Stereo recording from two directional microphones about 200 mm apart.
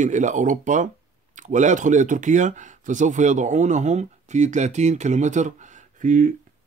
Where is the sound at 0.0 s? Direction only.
40° right (ahead or behind).